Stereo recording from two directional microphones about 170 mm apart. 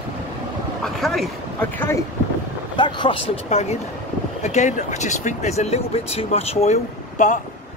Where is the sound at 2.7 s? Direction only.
25° left (ahead or behind); by 7.4 s 45° left (ahead or behind).